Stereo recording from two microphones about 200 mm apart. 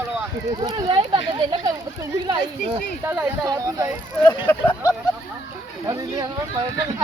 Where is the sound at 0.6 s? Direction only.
25° right (ahead or behind).